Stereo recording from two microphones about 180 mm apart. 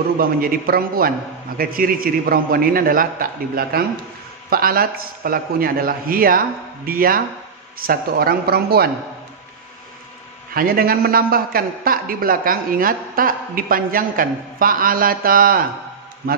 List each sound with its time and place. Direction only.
0.2 s a man's voice: 55° right (ahead or behind)
10.5 s a man's voice: 55° right (ahead or behind)